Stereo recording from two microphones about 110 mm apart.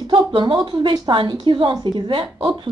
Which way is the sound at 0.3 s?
45° right (ahead or behind).